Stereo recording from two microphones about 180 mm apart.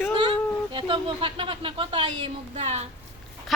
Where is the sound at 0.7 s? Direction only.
25° right (ahead or behind).